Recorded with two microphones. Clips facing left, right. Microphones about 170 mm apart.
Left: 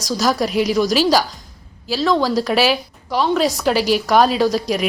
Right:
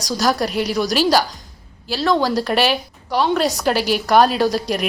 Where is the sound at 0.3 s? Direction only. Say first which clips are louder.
Left 3 dB; 5° left (ahead or behind).